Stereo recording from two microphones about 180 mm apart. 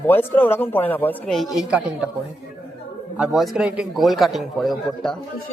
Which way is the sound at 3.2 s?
Centre (ahead or behind).